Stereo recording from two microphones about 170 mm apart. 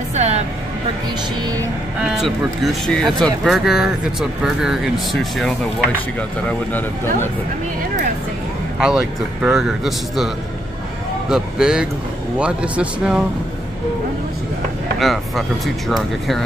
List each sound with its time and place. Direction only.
0.1 s music: 40° right (ahead or behind)
2.0 s speech: centre (ahead or behind)
8.7 s speech: 5° right (ahead or behind)
15.0 s speech: centre (ahead or behind)